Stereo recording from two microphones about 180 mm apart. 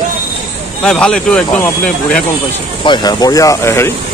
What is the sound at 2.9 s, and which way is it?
Speech, 20° left (ahead or behind).